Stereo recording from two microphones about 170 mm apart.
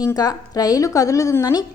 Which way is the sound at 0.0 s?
20° left (ahead or behind).